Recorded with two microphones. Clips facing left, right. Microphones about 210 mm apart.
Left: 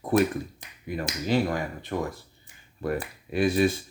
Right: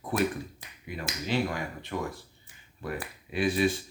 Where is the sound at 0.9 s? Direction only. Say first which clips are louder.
Left 5 dB; 45° left (ahead or behind).